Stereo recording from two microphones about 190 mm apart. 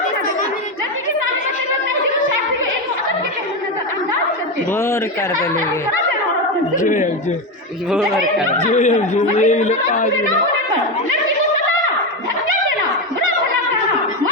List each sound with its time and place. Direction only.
6.8 s speech: 45° left (ahead or behind)
7.9 s speech: centre (ahead or behind)
8.5 s speech: 40° left (ahead or behind)